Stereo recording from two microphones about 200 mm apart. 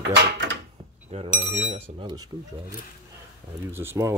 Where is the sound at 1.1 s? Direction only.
35° right (ahead or behind).